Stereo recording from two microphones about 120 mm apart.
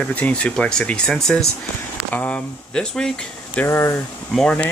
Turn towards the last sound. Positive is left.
turn(degrees=10)  # may be behind; listen again after turning